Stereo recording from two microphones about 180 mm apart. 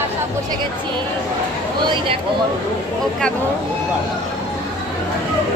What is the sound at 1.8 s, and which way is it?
Speech, 25° right (ahead or behind).